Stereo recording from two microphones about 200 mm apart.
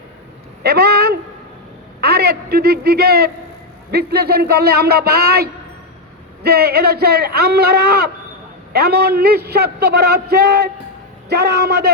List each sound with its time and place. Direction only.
0.6 s a man's voice: 50° right (ahead or behind)